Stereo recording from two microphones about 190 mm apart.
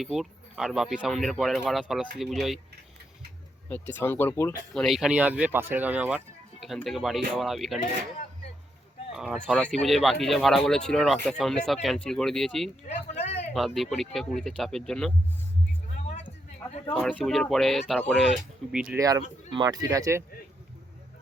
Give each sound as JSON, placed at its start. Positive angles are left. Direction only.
{"t": 0.0, "sound": "speech", "side_deg": 0}
{"t": 3.7, "sound": "speech", "side_deg": 10}
{"t": 4.7, "sound": "speech", "side_deg": 0}
{"t": 9.1, "sound": "speech", "side_deg": -5}
{"t": 12.9, "sound": "a sound", "side_deg": 35}
{"t": 13.5, "sound": "speech", "side_deg": 0}
{"t": 16.9, "sound": "speech", "side_deg": 5}
{"t": 18.9, "sound": "speech", "side_deg": -20}